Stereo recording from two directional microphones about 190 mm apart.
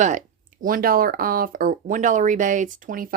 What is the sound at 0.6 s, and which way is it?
Speech, 50° right (ahead or behind).